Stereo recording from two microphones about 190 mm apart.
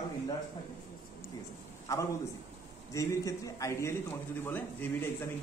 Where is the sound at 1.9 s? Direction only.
15° left (ahead or behind).